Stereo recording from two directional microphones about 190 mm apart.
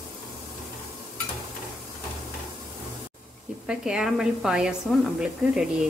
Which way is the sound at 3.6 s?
5° right (ahead or behind).